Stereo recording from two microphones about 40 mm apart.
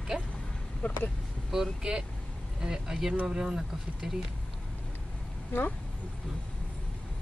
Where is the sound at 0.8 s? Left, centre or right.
Left.